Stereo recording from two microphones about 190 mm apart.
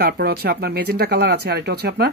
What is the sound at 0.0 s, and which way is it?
Speech, 55° right (ahead or behind).